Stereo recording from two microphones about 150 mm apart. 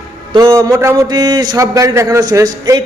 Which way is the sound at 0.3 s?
25° right (ahead or behind).